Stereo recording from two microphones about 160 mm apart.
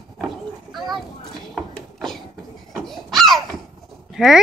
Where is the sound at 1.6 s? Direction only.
Centre (ahead or behind).